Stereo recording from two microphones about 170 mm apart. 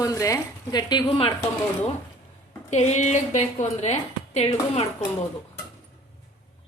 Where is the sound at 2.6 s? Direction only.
40° left (ahead or behind).